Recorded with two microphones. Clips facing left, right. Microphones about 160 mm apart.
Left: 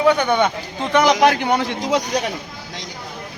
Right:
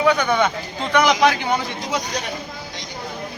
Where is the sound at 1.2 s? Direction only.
55° left (ahead or behind).